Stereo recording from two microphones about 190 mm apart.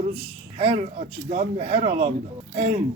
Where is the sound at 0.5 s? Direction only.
35° right (ahead or behind).